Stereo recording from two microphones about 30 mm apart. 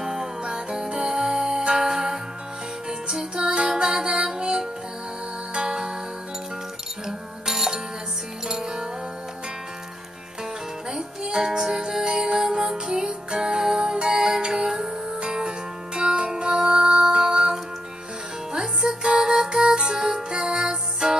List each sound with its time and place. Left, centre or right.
0.0 s music: centre
0.4 s music: right
7.1 s music: centre
10.9 s music: right
15.1 s music: right